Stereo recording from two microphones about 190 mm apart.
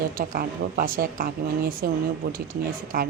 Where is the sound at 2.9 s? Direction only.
45° right (ahead or behind).